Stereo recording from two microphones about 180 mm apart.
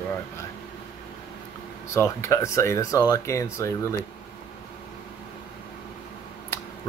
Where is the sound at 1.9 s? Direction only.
15° left (ahead or behind).